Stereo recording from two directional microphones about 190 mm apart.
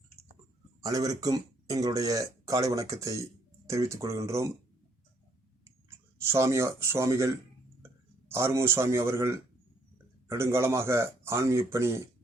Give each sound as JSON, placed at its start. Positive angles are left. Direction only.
{"t": 0.8, "sound": "speech", "side_deg": -20}
{"t": 6.1, "sound": "speech", "side_deg": -15}